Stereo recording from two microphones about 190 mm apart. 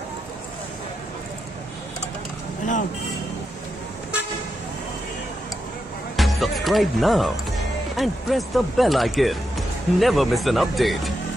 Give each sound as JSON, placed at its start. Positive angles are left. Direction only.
{"t": 2.6, "sound": "speech", "side_deg": 40}
{"t": 6.1, "sound": "music", "side_deg": 0}
{"t": 7.9, "sound": "speech", "side_deg": 0}